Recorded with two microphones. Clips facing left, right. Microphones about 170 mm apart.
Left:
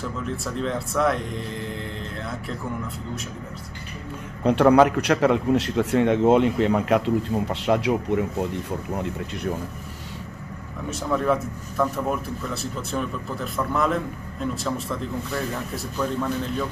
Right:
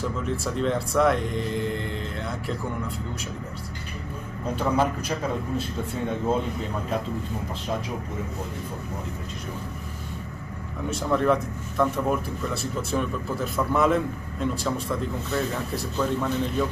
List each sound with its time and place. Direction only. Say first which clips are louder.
0.6 s speech: right 2 dB; centre (ahead or behind)
4.5 s a man's voice: left 9 dB; 75° left (ahead or behind)
10.9 s speech: right 1 dB; centre (ahead or behind)